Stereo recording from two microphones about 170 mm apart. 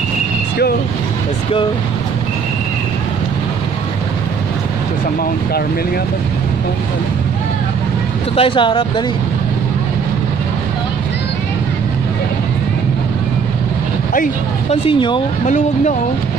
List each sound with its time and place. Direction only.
8.4 s speech: 30° left (ahead or behind)
14.7 s speech: 30° left (ahead or behind)
15.4 s speech: 45° left (ahead or behind)